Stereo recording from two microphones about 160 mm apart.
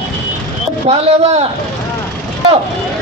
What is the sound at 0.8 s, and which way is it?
Speech, 45° right (ahead or behind).